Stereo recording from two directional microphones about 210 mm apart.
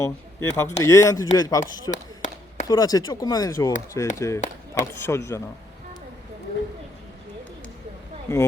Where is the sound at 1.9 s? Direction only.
35° left (ahead or behind).